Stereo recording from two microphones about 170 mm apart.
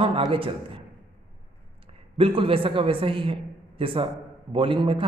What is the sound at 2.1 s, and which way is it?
A man's voice, 35° right (ahead or behind).